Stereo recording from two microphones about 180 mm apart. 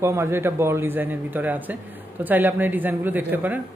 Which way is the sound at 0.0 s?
15° right (ahead or behind).